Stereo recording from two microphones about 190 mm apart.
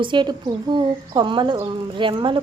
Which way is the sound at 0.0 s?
25° right (ahead or behind).